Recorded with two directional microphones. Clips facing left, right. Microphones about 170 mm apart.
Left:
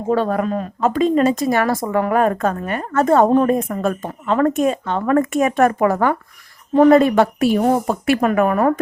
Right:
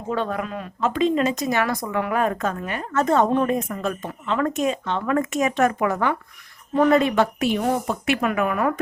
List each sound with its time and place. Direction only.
0.1 s speech: 40° left (ahead or behind)